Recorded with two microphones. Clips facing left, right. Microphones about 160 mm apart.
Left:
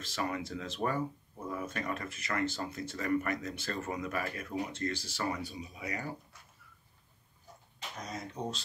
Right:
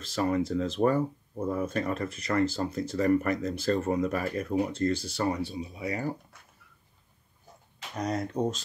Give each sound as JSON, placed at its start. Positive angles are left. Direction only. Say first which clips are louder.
{"t": 0.0, "sound": "speech", "louder": "right 8 dB", "side_deg": -35}
{"t": 8.0, "sound": "speech", "louder": "right 12 dB", "side_deg": -65}